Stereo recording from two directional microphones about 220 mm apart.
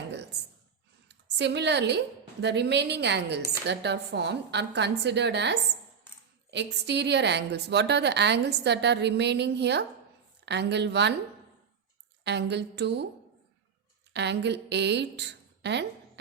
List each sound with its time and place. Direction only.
1.0 s a woman's voice: 50° right (ahead or behind)
12.2 s a woman's voice: 50° right (ahead or behind)
14.1 s a woman's voice: 50° right (ahead or behind)